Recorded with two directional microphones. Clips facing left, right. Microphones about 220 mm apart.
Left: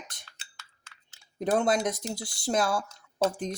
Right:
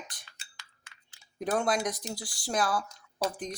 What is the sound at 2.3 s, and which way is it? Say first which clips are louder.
Speech: left 3 dB; 25° left (ahead or behind).